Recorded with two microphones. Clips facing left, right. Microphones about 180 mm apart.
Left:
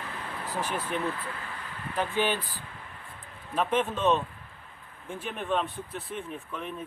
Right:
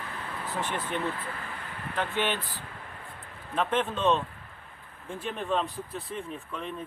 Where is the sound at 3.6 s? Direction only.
5° left (ahead or behind).